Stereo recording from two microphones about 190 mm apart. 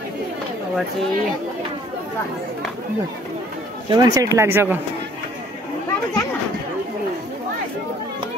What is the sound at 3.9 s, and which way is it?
Speech, 20° right (ahead or behind).